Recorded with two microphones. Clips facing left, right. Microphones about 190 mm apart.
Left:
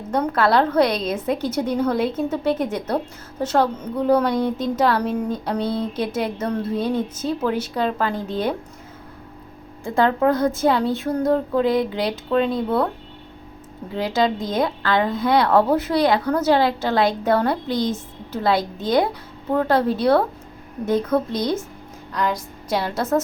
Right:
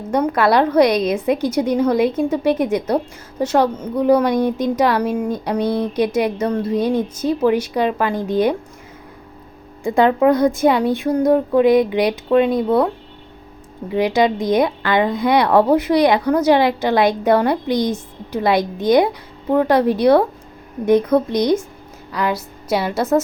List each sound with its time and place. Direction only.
0.1 s a woman's voice: 10° right (ahead or behind)
9.8 s a woman's voice: 15° right (ahead or behind)
13.9 s a woman's voice: 15° right (ahead or behind)